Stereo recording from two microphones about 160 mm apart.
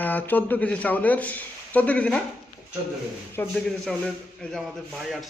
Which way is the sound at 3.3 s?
5° left (ahead or behind).